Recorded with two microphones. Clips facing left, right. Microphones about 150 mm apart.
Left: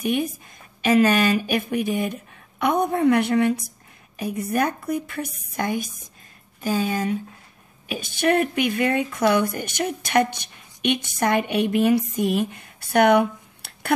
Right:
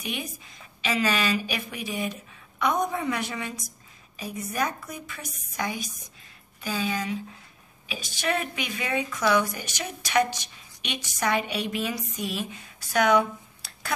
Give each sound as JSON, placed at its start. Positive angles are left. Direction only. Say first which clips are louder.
{"t": 0.0, "sound": "speech", "louder": "left 11 dB", "side_deg": 50}